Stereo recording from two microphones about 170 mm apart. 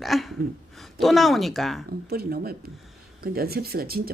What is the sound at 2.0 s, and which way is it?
Speech, 65° right (ahead or behind).